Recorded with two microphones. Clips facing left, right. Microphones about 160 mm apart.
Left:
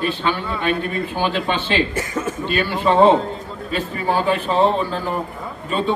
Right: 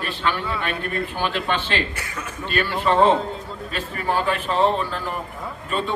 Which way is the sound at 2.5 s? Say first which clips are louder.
Left 3 dB; 15° left (ahead or behind).